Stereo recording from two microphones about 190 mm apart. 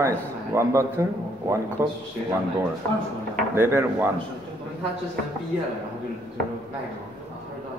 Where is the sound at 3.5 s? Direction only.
10° right (ahead or behind).